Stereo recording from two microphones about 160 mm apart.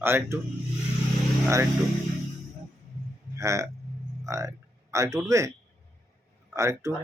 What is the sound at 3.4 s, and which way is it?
Speech, 20° right (ahead or behind).